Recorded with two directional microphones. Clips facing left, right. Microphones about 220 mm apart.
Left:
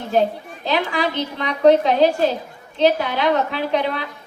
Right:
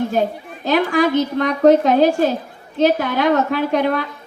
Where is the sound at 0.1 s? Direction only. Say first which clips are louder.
Left 1 dB; 45° right (ahead or behind).